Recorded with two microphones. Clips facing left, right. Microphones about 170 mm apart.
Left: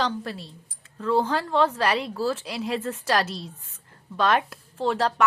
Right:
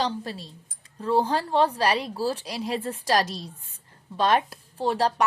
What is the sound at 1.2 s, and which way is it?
A woman's voice, 35° right (ahead or behind).